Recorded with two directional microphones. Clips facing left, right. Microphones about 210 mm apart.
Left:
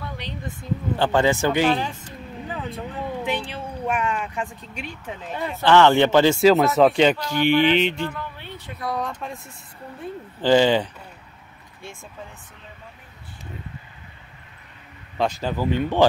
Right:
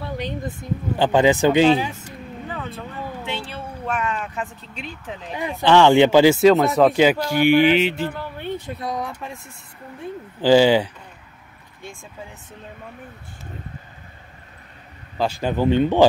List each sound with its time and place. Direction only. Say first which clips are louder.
0.9 s speech: right 3 dB; 15° right (ahead or behind)
2.4 s vehicle: even; 15° left (ahead or behind)
3.3 s speech: left 3 dB; 15° left (ahead or behind)
5.3 s speech: right 1 dB; 15° right (ahead or behind)
6.4 s speech: right 1 dB; centre (ahead or behind)
8.0 s speech: right 2 dB; 35° right (ahead or behind)
8.4 s a sound: right 10 dB; 50° right (ahead or behind)
8.8 s speech: left 4 dB; 10° right (ahead or behind)
10.4 s speech: right 3 dB; 10° right (ahead or behind)
15.1 s speech: right 1 dB; 10° right (ahead or behind)
15.5 s speech: right 5 dB; 25° right (ahead or behind)